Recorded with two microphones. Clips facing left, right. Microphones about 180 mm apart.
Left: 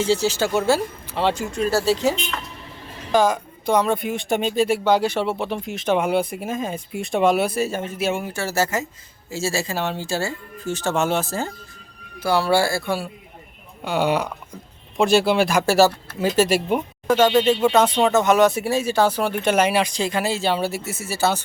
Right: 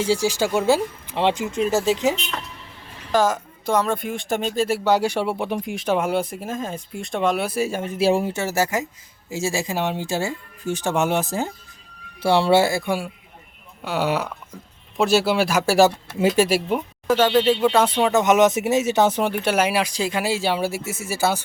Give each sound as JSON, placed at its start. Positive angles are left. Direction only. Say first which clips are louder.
{"t": 0.0, "sound": "speech", "louder": "even", "side_deg": -10}
{"t": 3.1, "sound": "a woman's voice", "louder": "left 1 dB", "side_deg": -5}
{"t": 7.5, "sound": "speech", "louder": "even", "side_deg": -10}
{"t": 7.9, "sound": "speech", "louder": "right 8 dB", "side_deg": -30}
{"t": 13.8, "sound": "a woman's voice", "louder": "left 2 dB", "side_deg": -5}
{"t": 19.3, "sound": "speech", "louder": "left 2 dB", "side_deg": -10}